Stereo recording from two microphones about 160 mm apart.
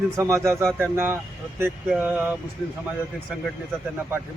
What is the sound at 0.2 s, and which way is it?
Speech, 15° right (ahead or behind).